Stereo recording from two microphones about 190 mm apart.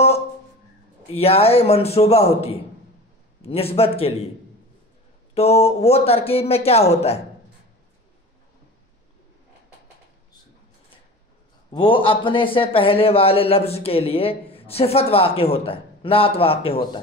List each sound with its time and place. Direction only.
1.1 s a man's voice: 30° left (ahead or behind)
5.3 s a man's voice: 35° left (ahead or behind)
11.7 s a man's voice: 25° left (ahead or behind)